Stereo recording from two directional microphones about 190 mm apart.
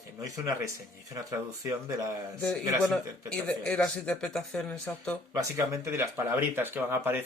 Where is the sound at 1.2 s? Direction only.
15° right (ahead or behind).